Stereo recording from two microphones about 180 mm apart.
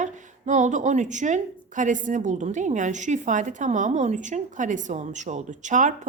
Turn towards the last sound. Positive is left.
turn(degrees=-45)  # may be behind; listen again after turning